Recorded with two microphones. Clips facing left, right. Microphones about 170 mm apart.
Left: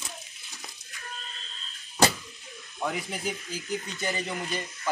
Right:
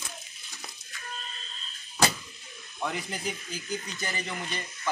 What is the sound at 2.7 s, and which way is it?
Speech, 5° left (ahead or behind).